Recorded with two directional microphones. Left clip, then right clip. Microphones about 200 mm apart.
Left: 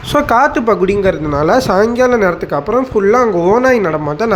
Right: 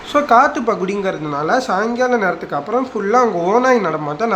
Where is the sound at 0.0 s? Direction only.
30° left (ahead or behind); by 1.2 s 10° left (ahead or behind).